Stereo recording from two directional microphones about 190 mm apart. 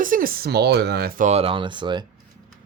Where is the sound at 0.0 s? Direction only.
45° right (ahead or behind).